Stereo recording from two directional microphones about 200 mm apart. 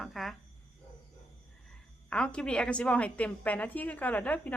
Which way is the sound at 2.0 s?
5° left (ahead or behind).